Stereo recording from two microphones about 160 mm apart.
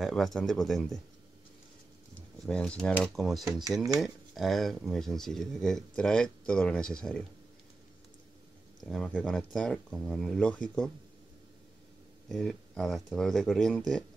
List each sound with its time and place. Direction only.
0.0 s speech: centre (ahead or behind)
2.4 s speech: 5° left (ahead or behind)
8.8 s speech: 5° left (ahead or behind)
12.3 s speech: 5° left (ahead or behind)